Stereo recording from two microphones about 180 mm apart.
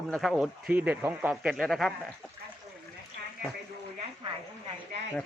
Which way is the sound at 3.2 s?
55° right (ahead or behind).